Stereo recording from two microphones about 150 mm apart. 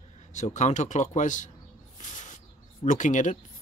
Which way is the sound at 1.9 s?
55° left (ahead or behind).